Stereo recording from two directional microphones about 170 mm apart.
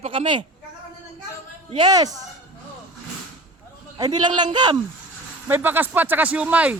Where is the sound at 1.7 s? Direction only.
25° right (ahead or behind).